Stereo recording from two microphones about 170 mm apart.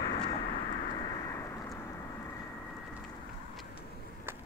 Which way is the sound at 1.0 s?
20° left (ahead or behind).